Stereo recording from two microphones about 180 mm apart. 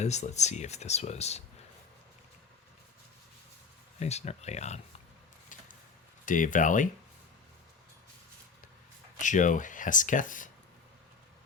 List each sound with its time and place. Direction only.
0.0 s speech: 40° left (ahead or behind)
4.0 s speech: 35° left (ahead or behind)
6.2 s speech: 45° left (ahead or behind)
9.1 s speech: 45° left (ahead or behind)